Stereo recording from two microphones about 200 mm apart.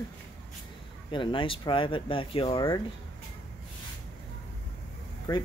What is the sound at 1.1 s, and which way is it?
Speech, 25° left (ahead or behind).